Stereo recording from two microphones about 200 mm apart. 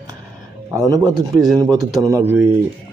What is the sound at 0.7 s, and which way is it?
Speech, 15° right (ahead or behind).